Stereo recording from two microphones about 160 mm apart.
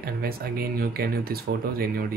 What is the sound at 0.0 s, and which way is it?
Speech, 70° right (ahead or behind).